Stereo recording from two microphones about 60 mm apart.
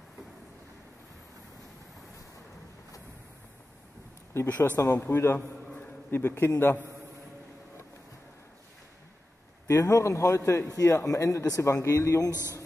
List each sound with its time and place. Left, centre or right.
4.5 s speech: left
4.7 s a man's voice: left
5.8 s a sound: left
9.7 s speech: left